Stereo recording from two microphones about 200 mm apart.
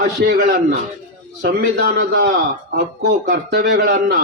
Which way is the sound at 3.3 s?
55° right (ahead or behind).